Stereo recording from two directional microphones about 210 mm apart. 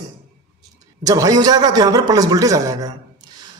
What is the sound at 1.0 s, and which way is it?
A man's voice, 15° right (ahead or behind).